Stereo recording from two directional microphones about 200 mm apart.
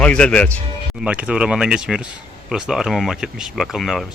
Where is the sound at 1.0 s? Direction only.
5° right (ahead or behind).